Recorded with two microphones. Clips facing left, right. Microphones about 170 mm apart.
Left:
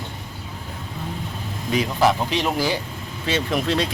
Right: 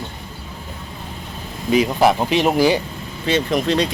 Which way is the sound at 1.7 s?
15° right (ahead or behind).